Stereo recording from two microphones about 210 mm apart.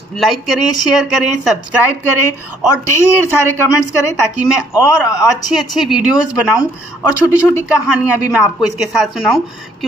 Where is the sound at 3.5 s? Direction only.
15° left (ahead or behind).